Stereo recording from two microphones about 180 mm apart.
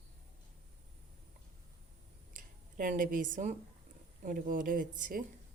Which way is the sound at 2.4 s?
50° right (ahead or behind).